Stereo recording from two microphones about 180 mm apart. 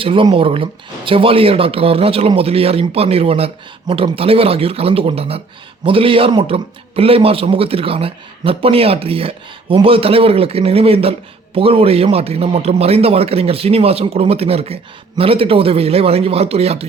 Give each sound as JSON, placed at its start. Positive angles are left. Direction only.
{"t": 0.0, "sound": "speech", "side_deg": -30}